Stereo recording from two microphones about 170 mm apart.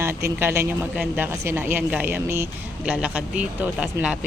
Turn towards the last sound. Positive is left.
turn(degrees=-5)  # may be behind; listen again after turning